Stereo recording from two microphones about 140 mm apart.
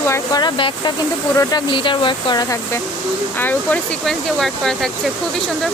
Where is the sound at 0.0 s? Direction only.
20° left (ahead or behind).